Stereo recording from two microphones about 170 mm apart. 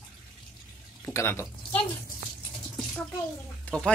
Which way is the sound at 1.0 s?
15° left (ahead or behind).